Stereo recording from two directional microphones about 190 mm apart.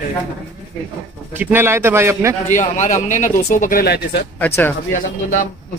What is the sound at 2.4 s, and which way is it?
A man's voice, 40° left (ahead or behind).